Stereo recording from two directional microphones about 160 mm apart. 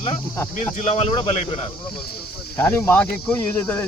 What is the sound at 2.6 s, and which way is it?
Speech, 15° left (ahead or behind).